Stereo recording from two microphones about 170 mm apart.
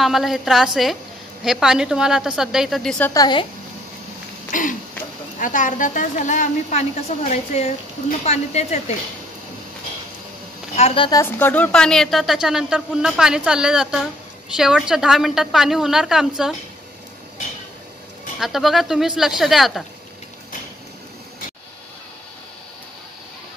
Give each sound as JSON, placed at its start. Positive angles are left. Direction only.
{"t": 0.0, "sound": "speech", "side_deg": 0}
{"t": 3.1, "sound": "a woman's voice", "side_deg": 25}
{"t": 4.5, "sound": "a woman's voice", "side_deg": 50}
{"t": 11.1, "sound": "speech", "side_deg": 15}
{"t": 18.4, "sound": "speech", "side_deg": 0}